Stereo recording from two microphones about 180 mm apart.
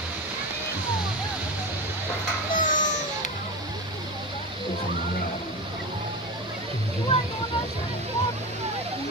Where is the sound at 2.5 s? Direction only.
45° left (ahead or behind).